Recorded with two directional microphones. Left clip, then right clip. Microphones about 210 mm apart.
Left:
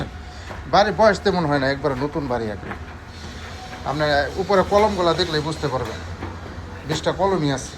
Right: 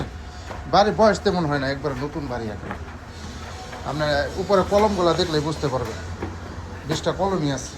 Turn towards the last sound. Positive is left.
turn(degrees=-20)  # may be behind; listen again after turning